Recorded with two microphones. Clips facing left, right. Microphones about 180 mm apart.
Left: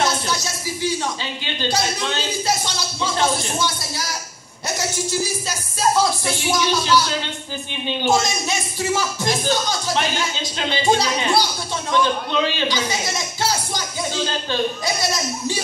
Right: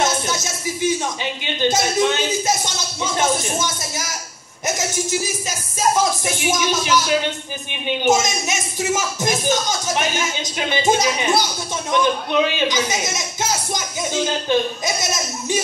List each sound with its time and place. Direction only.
0.0 s a man's voice: 20° right (ahead or behind)